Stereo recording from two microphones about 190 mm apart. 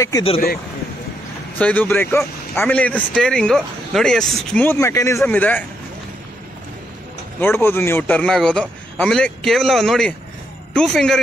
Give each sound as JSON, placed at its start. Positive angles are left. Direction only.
{"t": 1.6, "sound": "speech", "side_deg": 10}
{"t": 7.3, "sound": "a man's voice", "side_deg": 10}